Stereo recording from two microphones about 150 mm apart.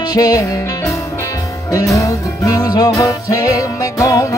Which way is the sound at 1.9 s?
20° left (ahead or behind).